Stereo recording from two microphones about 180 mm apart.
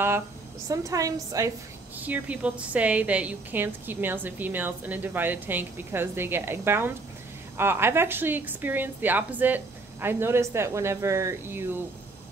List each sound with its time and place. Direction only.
0.7 s a woman's voice: 20° right (ahead or behind)